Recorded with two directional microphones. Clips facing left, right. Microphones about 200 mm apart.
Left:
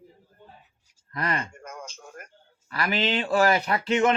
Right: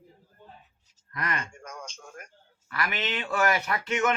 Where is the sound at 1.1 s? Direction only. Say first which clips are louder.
Left 4 dB; 30° left (ahead or behind).